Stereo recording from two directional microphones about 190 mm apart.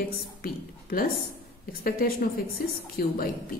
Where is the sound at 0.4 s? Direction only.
50° left (ahead or behind).